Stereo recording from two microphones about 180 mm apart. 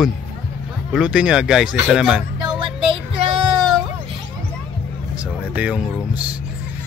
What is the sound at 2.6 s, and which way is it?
Music, 30° right (ahead or behind).